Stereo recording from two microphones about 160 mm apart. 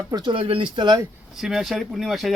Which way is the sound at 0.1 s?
30° right (ahead or behind).